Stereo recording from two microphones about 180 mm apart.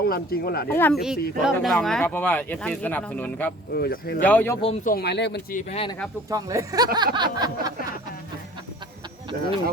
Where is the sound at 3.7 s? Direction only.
60° left (ahead or behind).